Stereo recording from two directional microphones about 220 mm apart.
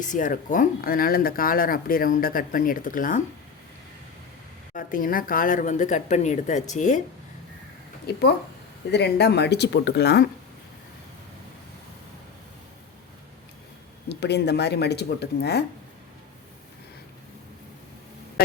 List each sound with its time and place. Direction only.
0.0 s speech: 35° left (ahead or behind)
4.7 s speech: 40° left (ahead or behind)
8.1 s speech: 45° left (ahead or behind)
14.1 s speech: 50° left (ahead or behind)